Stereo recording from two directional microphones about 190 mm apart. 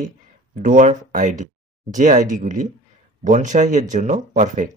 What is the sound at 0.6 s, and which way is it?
Speech, 40° right (ahead or behind).